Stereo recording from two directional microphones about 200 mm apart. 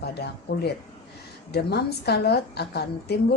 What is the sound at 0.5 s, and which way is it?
A woman's voice, 55° left (ahead or behind).